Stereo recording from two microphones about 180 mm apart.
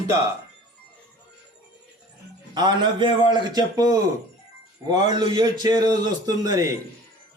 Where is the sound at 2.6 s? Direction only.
25° right (ahead or behind).